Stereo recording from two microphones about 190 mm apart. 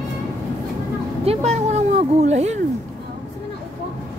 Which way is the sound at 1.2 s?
35° right (ahead or behind).